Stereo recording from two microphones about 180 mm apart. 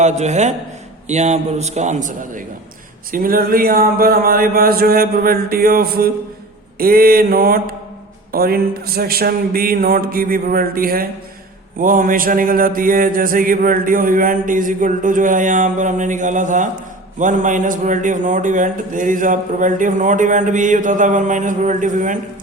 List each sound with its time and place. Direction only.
0.0 s a man's voice: 40° right (ahead or behind)